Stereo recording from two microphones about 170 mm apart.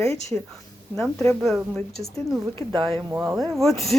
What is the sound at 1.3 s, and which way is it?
A woman's voice, centre (ahead or behind).